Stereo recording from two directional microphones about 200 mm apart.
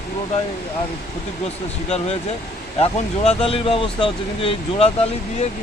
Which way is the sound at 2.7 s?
30° left (ahead or behind).